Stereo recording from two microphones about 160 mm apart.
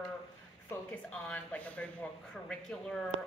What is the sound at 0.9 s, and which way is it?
A woman's voice, 10° left (ahead or behind).